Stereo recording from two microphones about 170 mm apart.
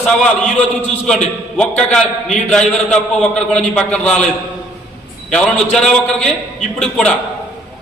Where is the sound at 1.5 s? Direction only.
5° left (ahead or behind).